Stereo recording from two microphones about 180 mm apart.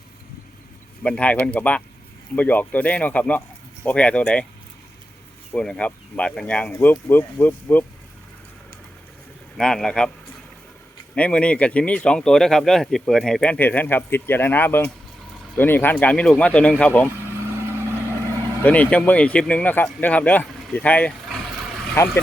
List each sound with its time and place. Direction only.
1.0 s speech: 5° left (ahead or behind)
5.5 s speech: 5° left (ahead or behind)
9.6 s speech: centre (ahead or behind)
11.1 s speech: 5° left (ahead or behind)
17.2 s vehicle: 15° right (ahead or behind)
18.6 s speech: 10° left (ahead or behind)